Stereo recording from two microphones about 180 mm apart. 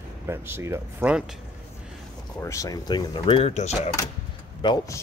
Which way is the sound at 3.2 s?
35° left (ahead or behind).